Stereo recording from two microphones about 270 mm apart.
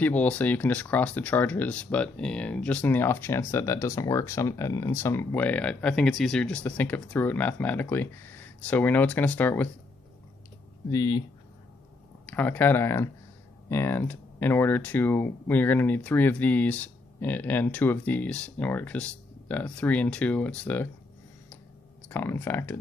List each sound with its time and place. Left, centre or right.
0.0 s speech: centre
10.9 s speech: centre
12.3 s speech: centre
22.1 s speech: centre